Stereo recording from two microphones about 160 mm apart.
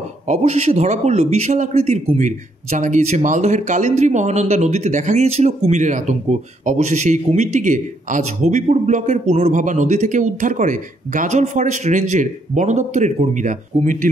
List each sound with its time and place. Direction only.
0.3 s speech: 40° right (ahead or behind)